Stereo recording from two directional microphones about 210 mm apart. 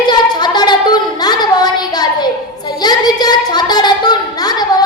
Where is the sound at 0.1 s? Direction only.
20° left (ahead or behind).